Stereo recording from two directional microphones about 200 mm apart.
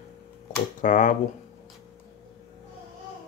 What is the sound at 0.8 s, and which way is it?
Speech, 40° left (ahead or behind).